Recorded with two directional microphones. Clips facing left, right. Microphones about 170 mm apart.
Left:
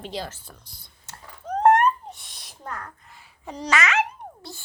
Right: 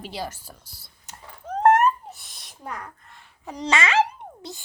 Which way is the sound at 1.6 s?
5° right (ahead or behind).